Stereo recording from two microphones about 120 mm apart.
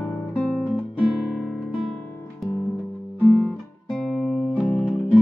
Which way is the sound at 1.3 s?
Centre (ahead or behind).